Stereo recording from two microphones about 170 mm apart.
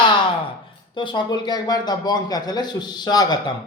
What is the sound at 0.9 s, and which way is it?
A man's voice, 25° left (ahead or behind).